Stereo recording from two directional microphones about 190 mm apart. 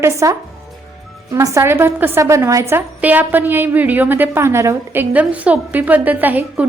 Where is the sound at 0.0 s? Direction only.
15° right (ahead or behind).